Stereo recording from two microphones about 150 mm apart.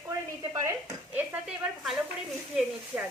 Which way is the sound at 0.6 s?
15° right (ahead or behind).